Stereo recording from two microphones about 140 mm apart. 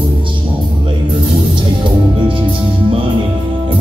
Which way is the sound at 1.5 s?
35° right (ahead or behind).